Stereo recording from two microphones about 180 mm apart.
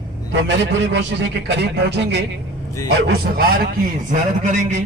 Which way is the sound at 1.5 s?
70° right (ahead or behind).